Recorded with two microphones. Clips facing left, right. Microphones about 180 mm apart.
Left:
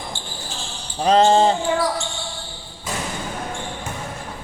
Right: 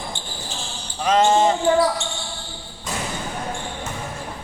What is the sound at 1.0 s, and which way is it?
Speech, 30° left (ahead or behind).